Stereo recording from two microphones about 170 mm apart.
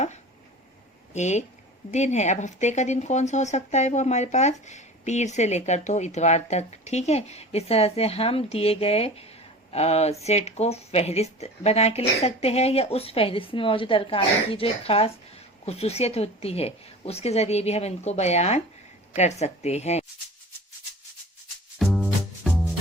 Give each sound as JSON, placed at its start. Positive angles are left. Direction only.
{"t": 1.1, "sound": "speech", "side_deg": 45}
{"t": 21.8, "sound": "music", "side_deg": 0}